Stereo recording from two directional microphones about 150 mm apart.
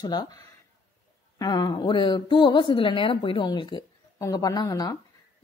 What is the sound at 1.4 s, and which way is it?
A woman's voice, 30° left (ahead or behind).